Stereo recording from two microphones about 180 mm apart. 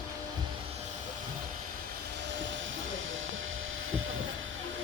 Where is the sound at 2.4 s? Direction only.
90° right.